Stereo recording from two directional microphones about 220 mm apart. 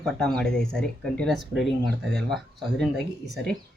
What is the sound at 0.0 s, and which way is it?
Speech, 5° left (ahead or behind).